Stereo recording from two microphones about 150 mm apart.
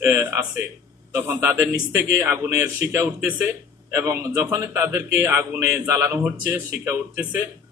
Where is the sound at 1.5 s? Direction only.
20° right (ahead or behind).